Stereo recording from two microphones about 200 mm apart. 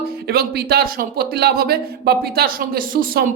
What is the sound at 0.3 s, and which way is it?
Speech, 50° right (ahead or behind).